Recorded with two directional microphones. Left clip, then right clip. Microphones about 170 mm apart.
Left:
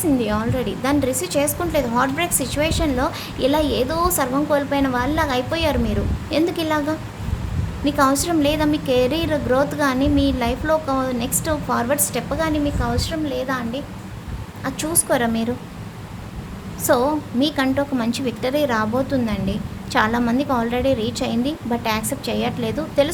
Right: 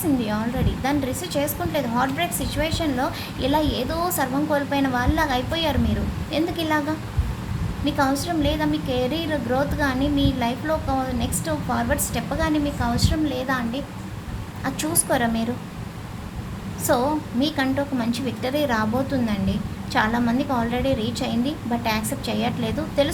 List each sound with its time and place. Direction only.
0.2 s a woman's voice: 25° left (ahead or behind)
7.9 s a woman's voice: 25° left (ahead or behind)
16.8 s a woman's voice: 25° left (ahead or behind)